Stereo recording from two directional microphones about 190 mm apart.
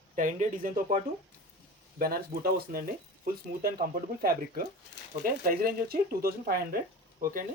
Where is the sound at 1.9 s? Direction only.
50° right (ahead or behind).